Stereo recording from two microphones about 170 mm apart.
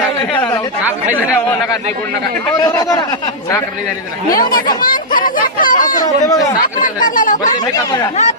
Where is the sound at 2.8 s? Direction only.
20° left (ahead or behind).